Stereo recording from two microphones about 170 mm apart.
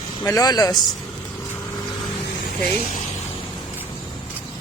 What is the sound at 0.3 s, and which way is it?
Speech, 20° left (ahead or behind).